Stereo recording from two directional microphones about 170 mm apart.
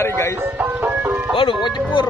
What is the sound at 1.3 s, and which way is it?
Speech, 30° left (ahead or behind).